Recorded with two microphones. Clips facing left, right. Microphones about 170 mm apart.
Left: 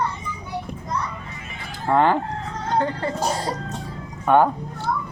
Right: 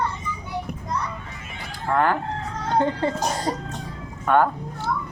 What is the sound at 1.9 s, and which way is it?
Speech, 20° left (ahead or behind).